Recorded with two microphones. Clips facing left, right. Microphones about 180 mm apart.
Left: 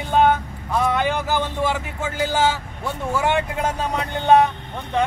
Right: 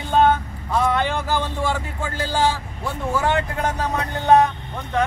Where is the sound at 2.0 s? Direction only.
20° left (ahead or behind).